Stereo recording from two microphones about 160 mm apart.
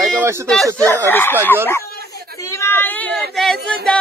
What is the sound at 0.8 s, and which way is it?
Speech, 15° left (ahead or behind).